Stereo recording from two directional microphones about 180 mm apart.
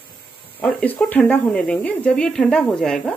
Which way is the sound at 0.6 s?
5° left (ahead or behind).